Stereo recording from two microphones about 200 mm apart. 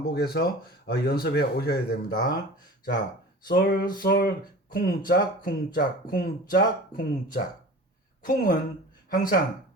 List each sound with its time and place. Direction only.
0.0 s speech: 50° left (ahead or behind)
3.4 s a woman's voice: 50° left (ahead or behind)